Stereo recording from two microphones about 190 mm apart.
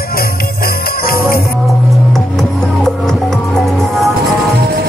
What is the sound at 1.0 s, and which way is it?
Music, 50° left (ahead or behind).